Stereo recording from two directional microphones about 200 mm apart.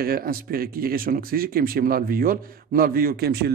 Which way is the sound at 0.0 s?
45° right (ahead or behind).